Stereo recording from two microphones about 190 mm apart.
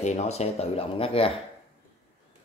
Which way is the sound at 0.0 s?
35° left (ahead or behind).